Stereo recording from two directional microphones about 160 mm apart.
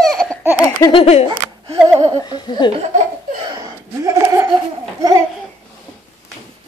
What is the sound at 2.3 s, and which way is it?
Laughter, 30° left (ahead or behind).